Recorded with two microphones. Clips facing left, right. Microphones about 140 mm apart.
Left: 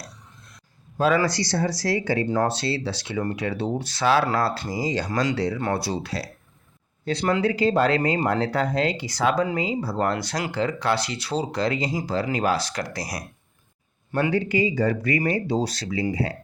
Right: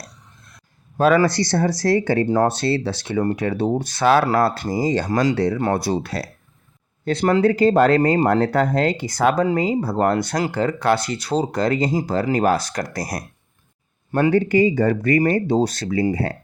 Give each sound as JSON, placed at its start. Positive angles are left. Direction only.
{"t": 0.9, "sound": "speech", "side_deg": -55}